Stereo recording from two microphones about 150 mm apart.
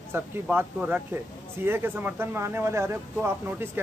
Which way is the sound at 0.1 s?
10° right (ahead or behind).